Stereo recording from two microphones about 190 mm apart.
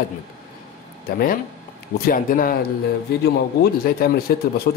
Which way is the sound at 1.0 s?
50° left (ahead or behind).